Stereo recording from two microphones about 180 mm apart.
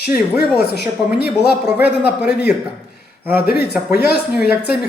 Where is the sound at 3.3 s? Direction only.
55° left (ahead or behind).